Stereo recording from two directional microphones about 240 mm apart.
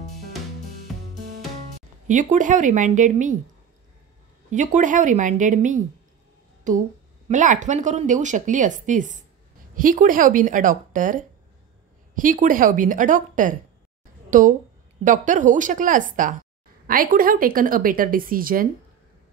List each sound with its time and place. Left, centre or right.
2.0 s speech: right
4.5 s speech: right